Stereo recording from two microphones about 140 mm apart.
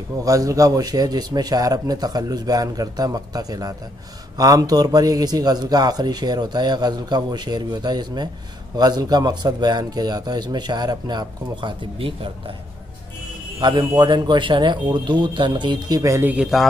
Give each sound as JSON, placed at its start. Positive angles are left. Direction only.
{"t": 0.2, "sound": "a man's voice", "side_deg": -25}
{"t": 13.6, "sound": "speech", "side_deg": -30}